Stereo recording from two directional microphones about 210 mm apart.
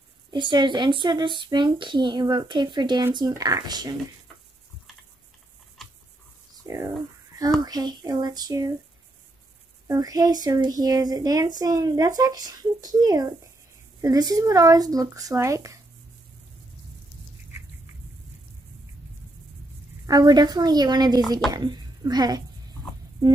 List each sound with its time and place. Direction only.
0.3 s speech: 20° right (ahead or behind)
5.8 s a sound: centre (ahead or behind)
6.6 s a sound: 15° right (ahead or behind)
7.6 s speech: 20° right (ahead or behind)
9.8 s speech: 15° right (ahead or behind)
20.1 s speech: 20° right (ahead or behind)